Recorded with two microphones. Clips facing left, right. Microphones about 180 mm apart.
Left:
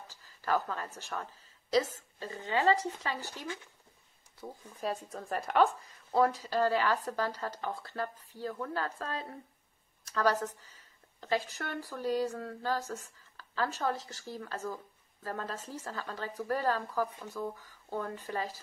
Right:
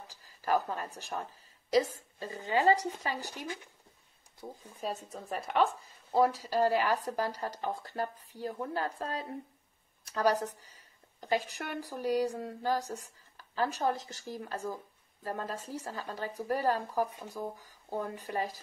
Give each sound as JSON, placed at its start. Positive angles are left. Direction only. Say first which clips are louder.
{"t": 0.4, "sound": "a woman's voice", "louder": "right 2 dB", "side_deg": -15}
{"t": 13.4, "sound": "a sound", "louder": "right 2 dB", "side_deg": -15}
{"t": 13.8, "sound": "a woman's voice", "louder": "right 2 dB", "side_deg": -15}
{"t": 17.3, "sound": "speech", "louder": "left 1 dB", "side_deg": -35}
{"t": 18.2, "sound": "a woman's voice", "louder": "right 2 dB", "side_deg": -15}